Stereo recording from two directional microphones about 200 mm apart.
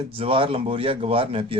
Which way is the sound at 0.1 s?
25° right (ahead or behind).